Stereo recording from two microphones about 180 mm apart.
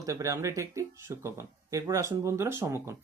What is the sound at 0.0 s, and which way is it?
Speech, 15° right (ahead or behind).